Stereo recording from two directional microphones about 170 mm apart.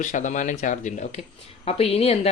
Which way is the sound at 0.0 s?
45° left (ahead or behind).